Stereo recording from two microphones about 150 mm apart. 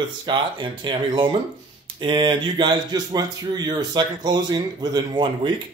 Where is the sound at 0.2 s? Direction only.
35° right (ahead or behind).